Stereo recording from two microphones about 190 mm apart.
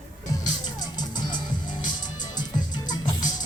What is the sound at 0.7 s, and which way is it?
Music, 20° left (ahead or behind).